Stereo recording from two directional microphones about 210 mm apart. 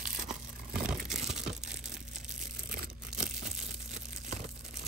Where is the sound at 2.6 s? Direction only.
45° right (ahead or behind).